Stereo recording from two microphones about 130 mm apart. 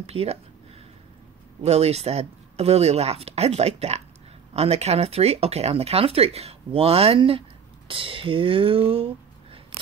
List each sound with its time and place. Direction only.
0.0 s speech: 50° right (ahead or behind)
1.6 s speech: 55° right (ahead or behind)